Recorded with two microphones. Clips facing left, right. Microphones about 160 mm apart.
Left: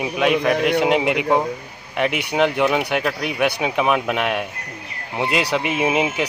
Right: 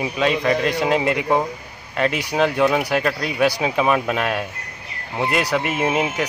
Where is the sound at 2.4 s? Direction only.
15° left (ahead or behind).